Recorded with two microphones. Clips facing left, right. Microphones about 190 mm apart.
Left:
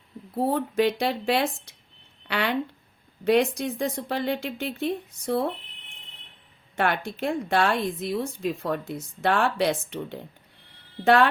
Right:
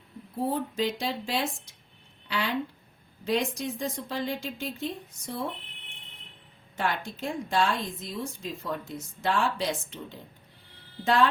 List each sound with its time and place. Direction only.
0.3 s a woman's voice: 65° left (ahead or behind)
6.7 s a woman's voice: 65° left (ahead or behind)